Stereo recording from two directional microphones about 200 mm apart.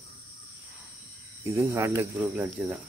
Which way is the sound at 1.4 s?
15° right (ahead or behind).